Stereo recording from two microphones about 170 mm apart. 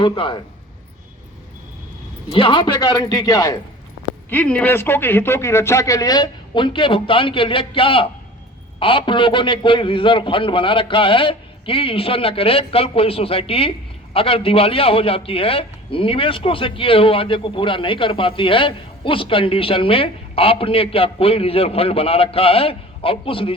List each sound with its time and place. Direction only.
0.0 s a man's voice: 30° left (ahead or behind)
2.3 s a man's voice: 30° left (ahead or behind)
4.3 s a man's voice: 10° left (ahead or behind); by 23.6 s 30° left (ahead or behind)